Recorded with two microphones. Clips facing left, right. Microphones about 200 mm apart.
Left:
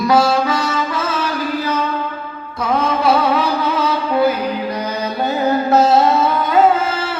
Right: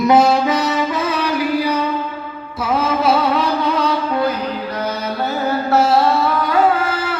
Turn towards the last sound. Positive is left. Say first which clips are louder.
# left 1 dB
turn(degrees=25)  # may be behind; listen again after turning